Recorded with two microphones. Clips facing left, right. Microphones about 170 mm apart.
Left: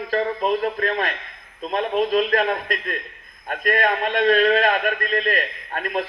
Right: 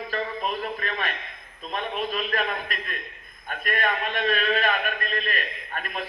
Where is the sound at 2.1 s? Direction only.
35° left (ahead or behind).